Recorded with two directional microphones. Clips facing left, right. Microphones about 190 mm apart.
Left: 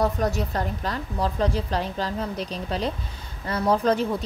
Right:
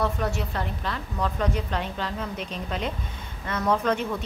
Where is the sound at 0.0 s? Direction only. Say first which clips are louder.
Left 3 dB; 40° left (ahead or behind).